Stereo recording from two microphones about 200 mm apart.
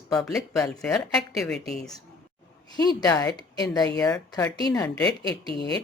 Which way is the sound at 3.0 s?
15° left (ahead or behind).